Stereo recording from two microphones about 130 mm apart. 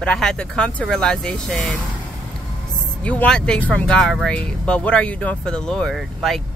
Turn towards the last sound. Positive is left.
turn(degrees=0)  # may be behind; listen again after turning